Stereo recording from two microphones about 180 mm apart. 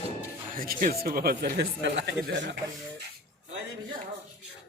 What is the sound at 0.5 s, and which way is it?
Speech, 50° right (ahead or behind).